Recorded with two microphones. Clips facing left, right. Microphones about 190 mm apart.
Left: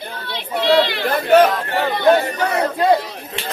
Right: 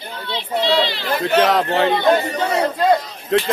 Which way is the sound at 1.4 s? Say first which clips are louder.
Right 1 dB; 80° right.